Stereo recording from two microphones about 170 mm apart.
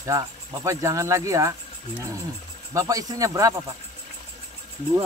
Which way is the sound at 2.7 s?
20° right (ahead or behind).